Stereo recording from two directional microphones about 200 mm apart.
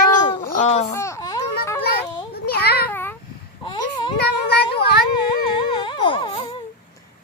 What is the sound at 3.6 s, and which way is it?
Babbling, 25° left (ahead or behind).